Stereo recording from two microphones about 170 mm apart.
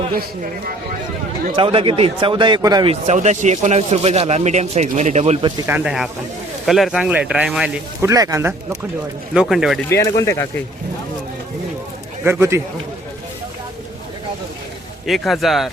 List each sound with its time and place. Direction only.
1.5 s a man's voice: 30° right (ahead or behind)
2.9 s speech: 40° right (ahead or behind)
5.6 s speech: 5° right (ahead or behind)
8.0 s a man's voice: 20° right (ahead or behind)
9.3 s speech: 5° right (ahead or behind)
9.9 s speech: 20° left (ahead or behind)
12.2 s speech: 15° right (ahead or behind)
15.0 s speech: centre (ahead or behind)